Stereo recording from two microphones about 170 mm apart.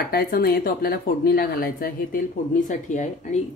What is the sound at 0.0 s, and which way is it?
Speech, 65° left (ahead or behind).